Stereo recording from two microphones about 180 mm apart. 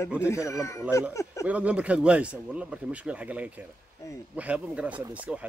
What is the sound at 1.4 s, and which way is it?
Speech, 5° right (ahead or behind).